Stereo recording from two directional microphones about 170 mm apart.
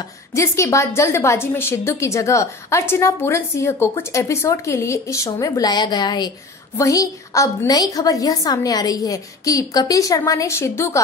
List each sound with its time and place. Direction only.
0.3 s a woman's voice: 15° left (ahead or behind)